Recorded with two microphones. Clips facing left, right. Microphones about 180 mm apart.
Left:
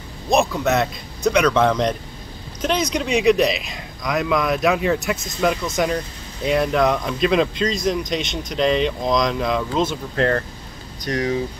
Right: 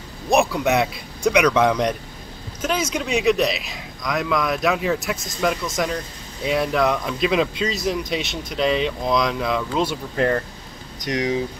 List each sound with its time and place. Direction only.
0.3 s speech: 15° right (ahead or behind)